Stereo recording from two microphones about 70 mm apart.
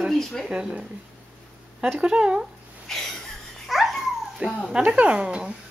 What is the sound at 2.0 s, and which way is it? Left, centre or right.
Speech, centre.